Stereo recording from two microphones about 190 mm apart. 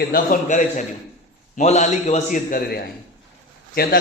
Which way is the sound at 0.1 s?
45° left (ahead or behind).